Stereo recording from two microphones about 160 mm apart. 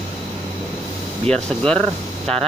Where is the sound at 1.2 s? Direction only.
5° left (ahead or behind).